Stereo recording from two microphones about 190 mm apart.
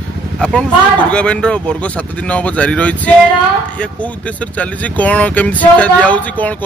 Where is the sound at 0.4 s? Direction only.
5° left (ahead or behind).